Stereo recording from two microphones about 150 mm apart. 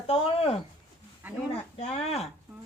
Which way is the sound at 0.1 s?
40° left (ahead or behind).